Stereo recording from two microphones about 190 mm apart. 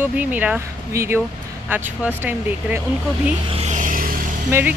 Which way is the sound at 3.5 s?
35° right (ahead or behind).